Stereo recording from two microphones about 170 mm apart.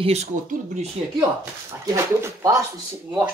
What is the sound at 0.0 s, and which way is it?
Speech, 40° right (ahead or behind).